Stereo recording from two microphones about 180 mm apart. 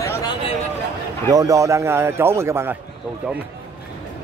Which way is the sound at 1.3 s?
20° right (ahead or behind).